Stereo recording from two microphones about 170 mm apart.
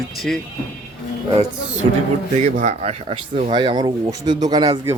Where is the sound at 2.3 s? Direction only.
45° right (ahead or behind).